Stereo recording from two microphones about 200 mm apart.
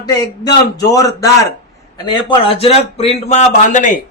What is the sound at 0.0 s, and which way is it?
A man's voice, 20° left (ahead or behind).